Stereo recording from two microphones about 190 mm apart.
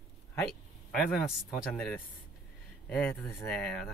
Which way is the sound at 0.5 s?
Centre (ahead or behind).